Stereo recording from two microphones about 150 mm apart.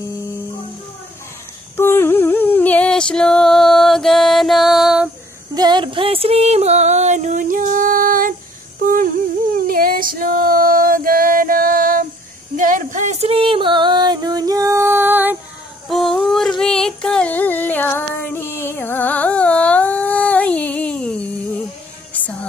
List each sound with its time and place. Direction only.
1.8 s a sound: 15° left (ahead or behind); by 5.1 s 5° right (ahead or behind)
5.5 s music: 30° right (ahead or behind); by 8.4 s 65° right (ahead or behind)
8.8 s humming: 70° right (ahead or behind)
9.7 s female singing: 70° right (ahead or behind)
12.5 s music: 60° right (ahead or behind); by 15.3 s 15° right (ahead or behind)
15.9 s a sound: centre (ahead or behind)
22.1 s music: 10° left (ahead or behind)